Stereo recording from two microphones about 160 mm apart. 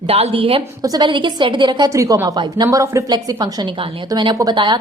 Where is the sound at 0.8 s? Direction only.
25° right (ahead or behind).